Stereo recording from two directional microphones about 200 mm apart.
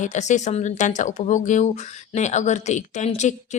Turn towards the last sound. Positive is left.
turn(degrees=35)  # may be behind; listen again after turning